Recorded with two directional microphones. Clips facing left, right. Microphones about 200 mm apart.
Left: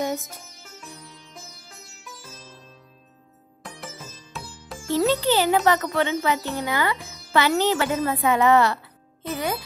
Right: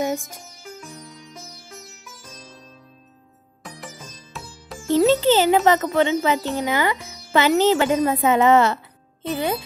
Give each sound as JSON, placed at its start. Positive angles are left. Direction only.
{"t": 0.0, "sound": "music", "side_deg": -15}
{"t": 3.6, "sound": "music", "side_deg": 0}
{"t": 4.9, "sound": "a child's voice", "side_deg": -20}